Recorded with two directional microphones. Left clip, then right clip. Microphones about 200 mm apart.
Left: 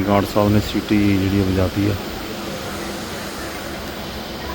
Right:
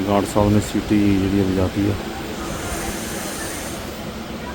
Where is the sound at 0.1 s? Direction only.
10° left (ahead or behind).